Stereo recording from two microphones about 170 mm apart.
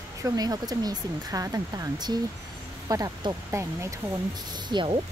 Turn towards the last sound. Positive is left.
turn(degrees=-30)  # may be behind; listen again after turning